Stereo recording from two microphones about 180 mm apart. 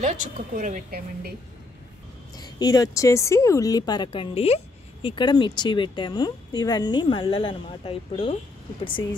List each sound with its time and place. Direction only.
0.0 s a woman's voice: 45° right (ahead or behind)
2.3 s speech: 20° left (ahead or behind)